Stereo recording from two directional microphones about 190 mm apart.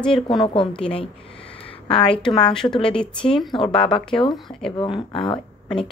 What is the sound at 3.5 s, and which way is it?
Speech, 25° left (ahead or behind).